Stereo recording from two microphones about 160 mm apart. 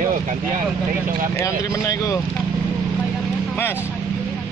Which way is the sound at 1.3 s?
20° left (ahead or behind).